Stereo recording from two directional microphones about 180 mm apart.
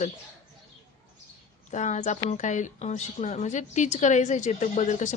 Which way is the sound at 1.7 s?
40° left (ahead or behind).